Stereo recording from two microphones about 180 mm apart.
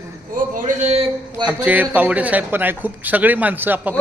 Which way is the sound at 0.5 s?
45° right (ahead or behind).